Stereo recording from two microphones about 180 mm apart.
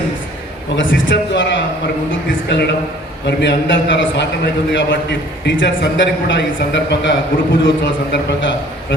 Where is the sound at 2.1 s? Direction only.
75° left (ahead or behind).